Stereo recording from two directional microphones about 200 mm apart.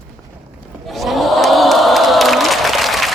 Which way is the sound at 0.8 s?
Centre (ahead or behind).